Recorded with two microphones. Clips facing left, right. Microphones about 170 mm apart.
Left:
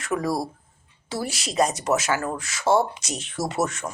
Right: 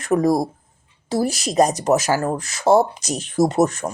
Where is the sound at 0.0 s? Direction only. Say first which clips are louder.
Right 8 dB; 40° right (ahead or behind).